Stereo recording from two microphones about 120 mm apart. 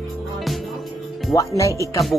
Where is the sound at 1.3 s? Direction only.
25° left (ahead or behind).